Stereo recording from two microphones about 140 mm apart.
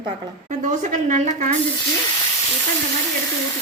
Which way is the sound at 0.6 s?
60° right (ahead or behind).